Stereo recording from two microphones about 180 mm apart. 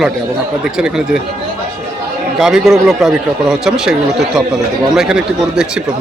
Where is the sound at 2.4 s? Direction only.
Centre (ahead or behind).